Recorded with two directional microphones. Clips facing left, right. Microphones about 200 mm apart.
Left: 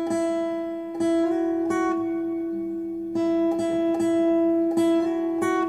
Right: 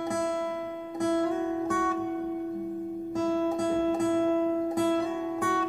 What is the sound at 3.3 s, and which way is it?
Music, 20° left (ahead or behind).